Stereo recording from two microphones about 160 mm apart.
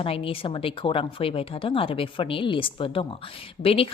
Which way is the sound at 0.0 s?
35° left (ahead or behind).